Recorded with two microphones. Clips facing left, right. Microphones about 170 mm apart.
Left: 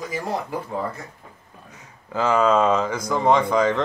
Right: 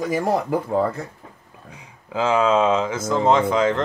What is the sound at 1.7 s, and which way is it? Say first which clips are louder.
Speech: right 1 dB; 10° right (ahead or behind).